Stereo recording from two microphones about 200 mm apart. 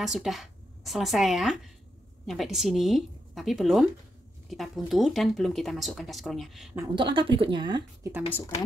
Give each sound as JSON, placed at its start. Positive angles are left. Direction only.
{"t": 0.0, "sound": "a woman's voice", "side_deg": 0}
{"t": 7.0, "sound": "speech", "side_deg": -25}